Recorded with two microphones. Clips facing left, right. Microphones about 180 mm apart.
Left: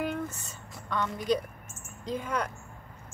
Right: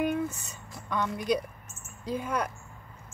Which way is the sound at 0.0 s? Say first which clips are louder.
Right 4 dB; 15° right (ahead or behind).